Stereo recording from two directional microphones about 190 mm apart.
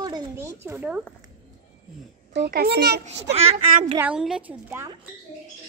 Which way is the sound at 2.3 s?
55° right (ahead or behind).